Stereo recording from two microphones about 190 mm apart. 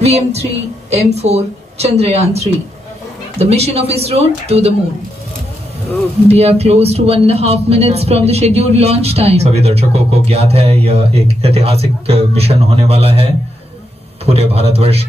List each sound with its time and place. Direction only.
0.0 s speech: 35° right (ahead or behind)
6.2 s speech: 35° right (ahead or behind)